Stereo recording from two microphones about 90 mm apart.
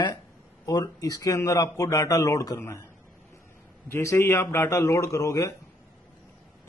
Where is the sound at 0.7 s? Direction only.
45° left (ahead or behind).